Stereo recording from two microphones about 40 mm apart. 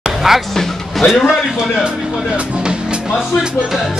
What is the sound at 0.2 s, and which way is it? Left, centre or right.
Speech, centre.